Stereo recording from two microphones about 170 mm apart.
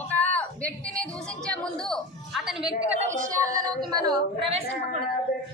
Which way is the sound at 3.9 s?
30° right (ahead or behind).